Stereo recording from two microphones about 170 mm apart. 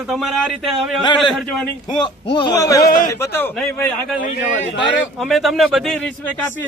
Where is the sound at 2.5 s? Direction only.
20° left (ahead or behind).